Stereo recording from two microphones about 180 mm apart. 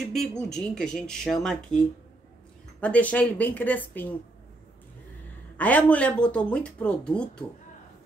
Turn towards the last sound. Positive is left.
turn(degrees=5)  # may be behind; listen again after turning